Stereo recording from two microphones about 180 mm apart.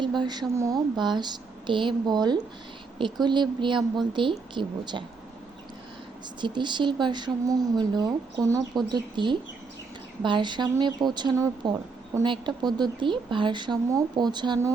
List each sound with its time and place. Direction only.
0.0 s speech: 25° right (ahead or behind)
6.4 s speech: 25° right (ahead or behind)